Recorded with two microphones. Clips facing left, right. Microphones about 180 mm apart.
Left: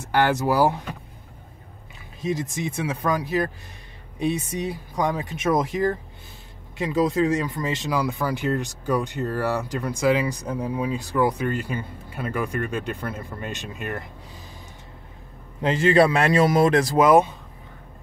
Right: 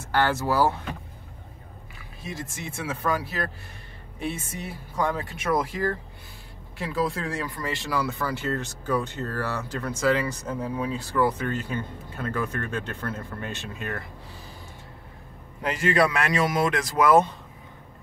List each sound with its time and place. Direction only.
0.0 s speech: 15° left (ahead or behind)
2.2 s speech: 15° left (ahead or behind)
15.6 s speech: 25° left (ahead or behind)
17.0 s speech: 15° left (ahead or behind)